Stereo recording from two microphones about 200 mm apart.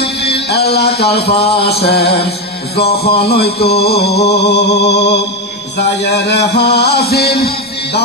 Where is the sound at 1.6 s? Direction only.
30° left (ahead or behind).